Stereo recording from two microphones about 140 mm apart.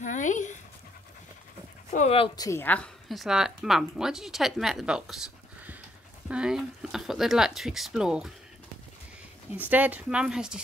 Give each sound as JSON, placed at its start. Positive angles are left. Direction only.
{"t": 0.0, "sound": "a sound", "side_deg": 60}
{"t": 2.0, "sound": "speech", "side_deg": 40}
{"t": 2.4, "sound": "speech", "side_deg": 15}
{"t": 3.1, "sound": "a woman's voice", "side_deg": 0}
{"t": 9.6, "sound": "speech", "side_deg": -10}